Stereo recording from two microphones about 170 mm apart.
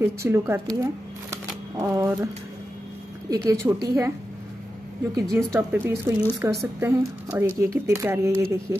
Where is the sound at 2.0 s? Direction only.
15° right (ahead or behind).